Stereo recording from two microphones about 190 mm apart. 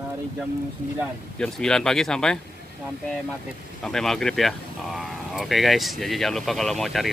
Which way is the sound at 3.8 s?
Centre (ahead or behind).